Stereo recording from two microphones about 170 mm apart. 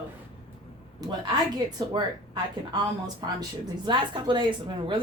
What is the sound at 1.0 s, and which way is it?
Speech, 25° right (ahead or behind).